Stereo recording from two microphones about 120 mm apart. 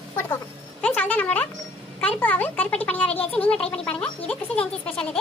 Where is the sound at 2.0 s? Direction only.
15° left (ahead or behind).